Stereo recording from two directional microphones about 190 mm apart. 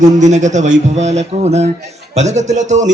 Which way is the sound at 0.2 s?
40° right (ahead or behind).